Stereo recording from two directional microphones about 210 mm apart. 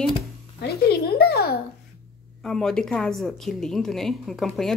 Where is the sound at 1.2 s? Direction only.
50° left (ahead or behind).